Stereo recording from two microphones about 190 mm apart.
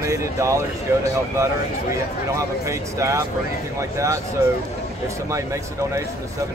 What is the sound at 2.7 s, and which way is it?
Speech, 15° right (ahead or behind).